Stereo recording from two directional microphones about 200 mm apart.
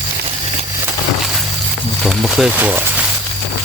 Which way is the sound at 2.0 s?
Centre (ahead or behind).